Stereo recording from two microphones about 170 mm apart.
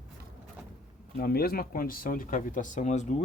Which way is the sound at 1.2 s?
60° left (ahead or behind).